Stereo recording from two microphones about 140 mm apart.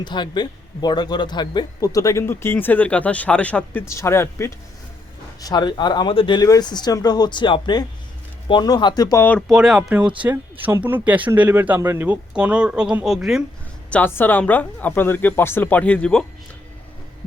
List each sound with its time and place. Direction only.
0.0 s speech: 35° left (ahead or behind)
9.5 s speech: 5° right (ahead or behind)
13.9 s speech: 15° left (ahead or behind)